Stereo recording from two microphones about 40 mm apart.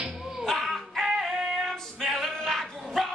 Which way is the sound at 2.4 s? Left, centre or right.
Centre.